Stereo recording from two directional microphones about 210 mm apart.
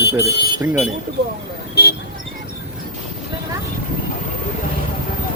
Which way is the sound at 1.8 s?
50° left (ahead or behind).